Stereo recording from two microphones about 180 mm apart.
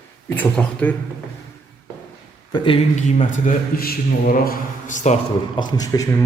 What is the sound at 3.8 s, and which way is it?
A man's voice, 55° left (ahead or behind).